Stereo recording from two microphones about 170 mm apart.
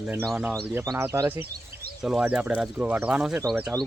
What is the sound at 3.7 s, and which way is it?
Speech, 20° right (ahead or behind).